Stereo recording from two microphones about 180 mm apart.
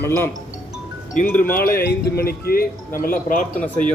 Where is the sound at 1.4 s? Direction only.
55° left (ahead or behind).